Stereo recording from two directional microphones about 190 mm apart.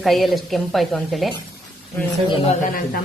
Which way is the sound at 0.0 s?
Centre (ahead or behind).